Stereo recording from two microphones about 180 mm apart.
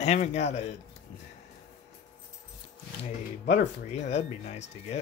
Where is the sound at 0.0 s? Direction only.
40° left (ahead or behind).